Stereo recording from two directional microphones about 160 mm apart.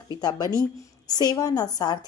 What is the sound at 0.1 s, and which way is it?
A woman's voice, 25° left (ahead or behind).